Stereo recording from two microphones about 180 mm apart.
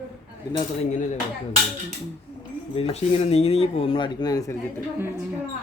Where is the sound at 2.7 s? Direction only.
35° left (ahead or behind).